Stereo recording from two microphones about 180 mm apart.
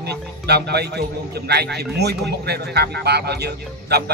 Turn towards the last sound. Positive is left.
turn(degrees=-65)  # may be behind; listen again after turning